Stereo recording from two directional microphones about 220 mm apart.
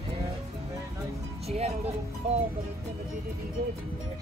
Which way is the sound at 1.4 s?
30° right (ahead or behind).